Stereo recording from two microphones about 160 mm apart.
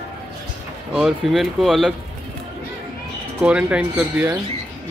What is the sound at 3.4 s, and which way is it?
Speech, 10° right (ahead or behind).